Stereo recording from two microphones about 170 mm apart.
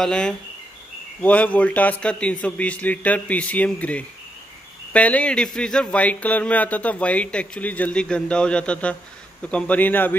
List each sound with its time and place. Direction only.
0.0 s speech: 5° left (ahead or behind)